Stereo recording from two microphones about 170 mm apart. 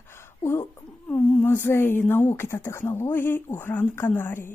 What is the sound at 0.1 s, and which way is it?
Speech, 15° left (ahead or behind).